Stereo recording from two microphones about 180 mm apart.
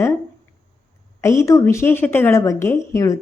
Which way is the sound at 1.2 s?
15° left (ahead or behind).